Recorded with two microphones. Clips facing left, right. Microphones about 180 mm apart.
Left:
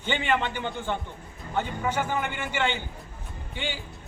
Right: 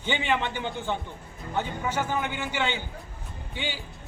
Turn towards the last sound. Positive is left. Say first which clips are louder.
# even
turn(degrees=50)  # may be behind; listen again after turning